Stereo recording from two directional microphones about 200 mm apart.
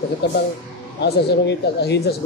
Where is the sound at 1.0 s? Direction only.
55° left (ahead or behind).